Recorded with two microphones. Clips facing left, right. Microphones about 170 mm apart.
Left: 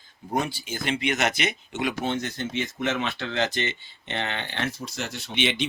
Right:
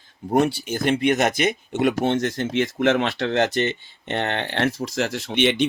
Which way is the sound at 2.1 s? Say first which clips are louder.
Right 7 dB; 90° right.